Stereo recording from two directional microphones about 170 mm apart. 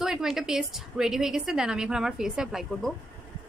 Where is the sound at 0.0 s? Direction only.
5° right (ahead or behind).